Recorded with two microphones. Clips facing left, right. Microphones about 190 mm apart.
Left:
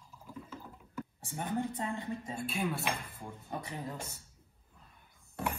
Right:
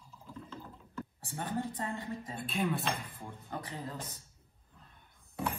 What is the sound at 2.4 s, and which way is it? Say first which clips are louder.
Speech: right 3 dB; centre (ahead or behind).